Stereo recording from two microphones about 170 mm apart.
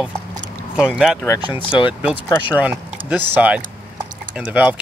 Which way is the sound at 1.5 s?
30° left (ahead or behind).